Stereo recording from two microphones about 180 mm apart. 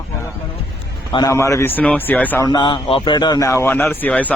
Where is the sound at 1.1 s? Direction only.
15° left (ahead or behind).